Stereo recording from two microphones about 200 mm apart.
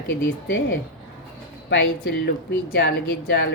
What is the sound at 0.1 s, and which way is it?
Speech, 55° left (ahead or behind).